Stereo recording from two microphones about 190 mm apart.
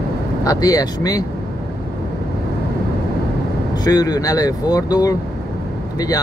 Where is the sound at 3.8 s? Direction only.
20° left (ahead or behind).